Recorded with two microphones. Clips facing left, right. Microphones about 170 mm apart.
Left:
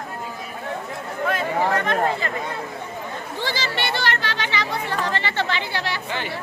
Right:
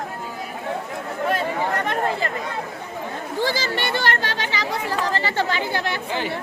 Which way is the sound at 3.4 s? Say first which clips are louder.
Right 3 dB; 45° right (ahead or behind).